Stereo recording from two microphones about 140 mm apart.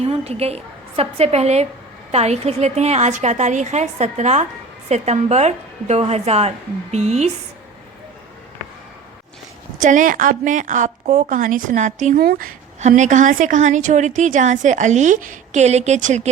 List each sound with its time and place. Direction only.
0.0 s a woman's voice: 45° right (ahead or behind)
9.8 s a woman's voice: 70° right (ahead or behind); by 12.5 s 90° right
12.9 s a woman's voice: 60° right (ahead or behind)